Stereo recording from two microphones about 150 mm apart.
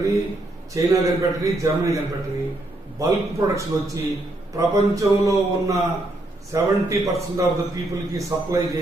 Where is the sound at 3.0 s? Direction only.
20° right (ahead or behind).